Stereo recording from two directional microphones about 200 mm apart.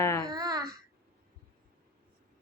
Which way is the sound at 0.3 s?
20° right (ahead or behind).